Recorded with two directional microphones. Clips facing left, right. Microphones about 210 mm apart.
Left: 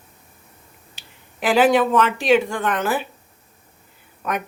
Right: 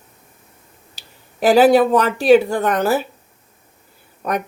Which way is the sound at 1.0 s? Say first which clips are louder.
Right 8 dB; 40° right (ahead or behind).